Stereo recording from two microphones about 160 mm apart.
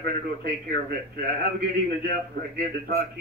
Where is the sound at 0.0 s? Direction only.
75° right (ahead or behind).